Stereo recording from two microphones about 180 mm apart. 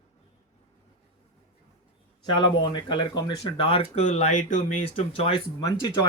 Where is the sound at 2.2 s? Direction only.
25° left (ahead or behind); by 4.8 s 45° left (ahead or behind).